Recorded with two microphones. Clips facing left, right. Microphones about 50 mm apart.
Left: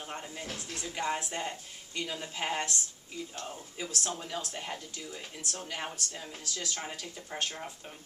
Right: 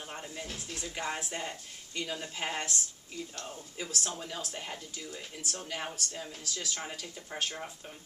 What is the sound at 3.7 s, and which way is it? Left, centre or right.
Speech, centre.